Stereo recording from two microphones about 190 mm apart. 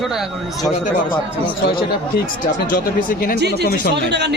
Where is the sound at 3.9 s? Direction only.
65° right (ahead or behind).